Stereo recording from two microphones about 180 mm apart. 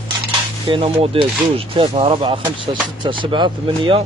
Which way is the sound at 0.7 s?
30° right (ahead or behind).